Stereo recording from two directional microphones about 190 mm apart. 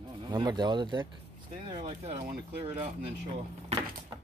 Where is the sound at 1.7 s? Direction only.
30° right (ahead or behind).